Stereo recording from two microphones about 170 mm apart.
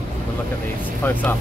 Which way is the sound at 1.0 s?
10° left (ahead or behind).